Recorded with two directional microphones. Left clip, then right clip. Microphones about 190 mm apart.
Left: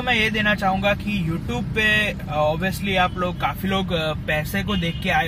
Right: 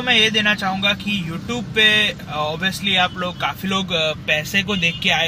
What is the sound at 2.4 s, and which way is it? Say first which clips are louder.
Speech: left 4 dB; 35° right (ahead or behind).